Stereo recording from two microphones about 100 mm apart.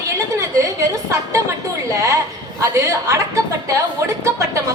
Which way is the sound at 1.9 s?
30° right (ahead or behind).